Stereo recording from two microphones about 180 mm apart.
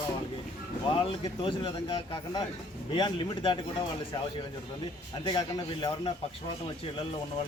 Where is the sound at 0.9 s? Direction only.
30° left (ahead or behind).